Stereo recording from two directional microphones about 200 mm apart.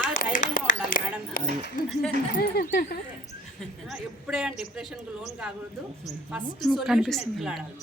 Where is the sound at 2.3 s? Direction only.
45° left (ahead or behind).